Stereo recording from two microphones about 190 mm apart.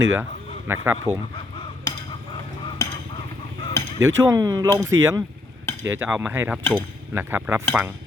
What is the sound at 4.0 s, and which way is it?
Speech, 15° right (ahead or behind).